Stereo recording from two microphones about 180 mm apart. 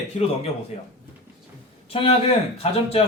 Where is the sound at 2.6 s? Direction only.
30° left (ahead or behind).